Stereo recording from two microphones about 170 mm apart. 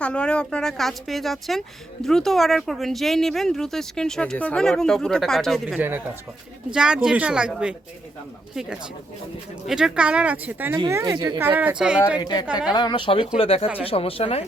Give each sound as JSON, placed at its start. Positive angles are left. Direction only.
{"t": 0.0, "sound": "speech", "side_deg": 5}
{"t": 5.6, "sound": "speech", "side_deg": -10}
{"t": 9.6, "sound": "speech", "side_deg": -5}
{"t": 10.8, "sound": "speech", "side_deg": -20}
{"t": 12.2, "sound": "speech", "side_deg": 25}
{"t": 12.5, "sound": "speech", "side_deg": -5}
{"t": 12.7, "sound": "speech", "side_deg": 30}